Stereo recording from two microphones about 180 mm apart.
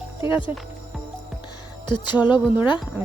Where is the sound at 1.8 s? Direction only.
25° left (ahead or behind).